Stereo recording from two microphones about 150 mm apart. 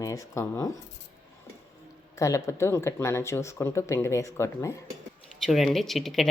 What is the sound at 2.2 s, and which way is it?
Speech, 20° left (ahead or behind).